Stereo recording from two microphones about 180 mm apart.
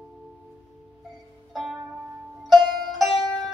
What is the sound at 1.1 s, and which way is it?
Music, centre (ahead or behind).